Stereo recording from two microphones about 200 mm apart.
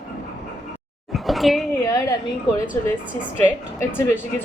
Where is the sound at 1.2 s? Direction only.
Centre (ahead or behind).